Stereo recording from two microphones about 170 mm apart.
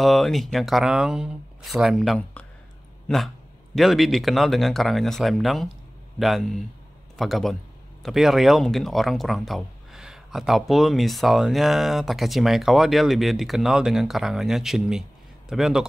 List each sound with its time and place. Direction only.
0.0 s speech: centre (ahead or behind)
3.7 s speech: centre (ahead or behind)